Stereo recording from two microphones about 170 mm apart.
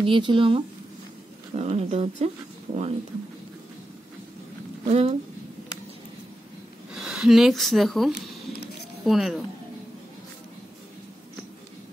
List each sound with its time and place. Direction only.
0.0 s speech: 30° right (ahead or behind)
4.8 s speech: 40° right (ahead or behind)
6.9 s speech: 5° right (ahead or behind)